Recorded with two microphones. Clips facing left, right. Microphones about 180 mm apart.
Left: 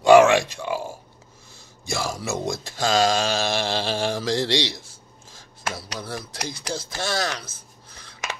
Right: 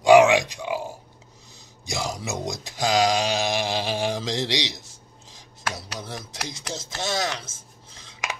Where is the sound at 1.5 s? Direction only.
20° right (ahead or behind).